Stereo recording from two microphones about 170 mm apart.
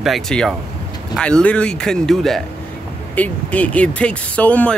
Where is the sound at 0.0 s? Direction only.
Centre (ahead or behind).